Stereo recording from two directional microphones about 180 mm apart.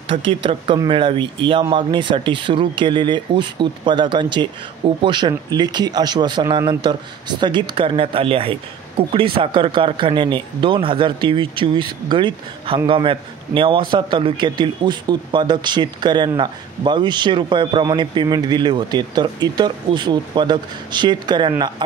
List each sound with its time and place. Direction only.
0.1 s speech: 30° right (ahead or behind)